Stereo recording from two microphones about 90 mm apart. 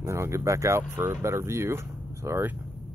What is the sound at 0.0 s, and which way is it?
Speech, 30° right (ahead or behind).